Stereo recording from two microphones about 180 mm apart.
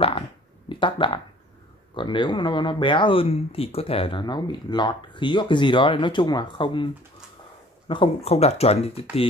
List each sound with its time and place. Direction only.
0.7 s speech: 30° left (ahead or behind)
7.9 s speech: 30° left (ahead or behind)